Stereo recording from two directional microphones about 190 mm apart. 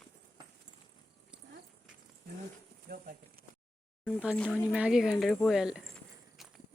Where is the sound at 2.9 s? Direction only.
55° right (ahead or behind).